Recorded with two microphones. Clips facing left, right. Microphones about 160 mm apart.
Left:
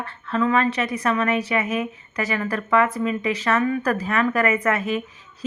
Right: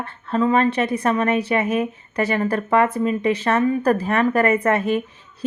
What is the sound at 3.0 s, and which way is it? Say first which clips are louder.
Speech: right 4 dB; 50° right (ahead or behind).